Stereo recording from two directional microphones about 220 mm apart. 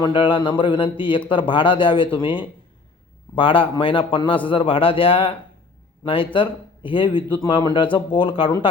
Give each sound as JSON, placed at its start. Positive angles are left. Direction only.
{"t": 0.0, "sound": "speech", "side_deg": 20}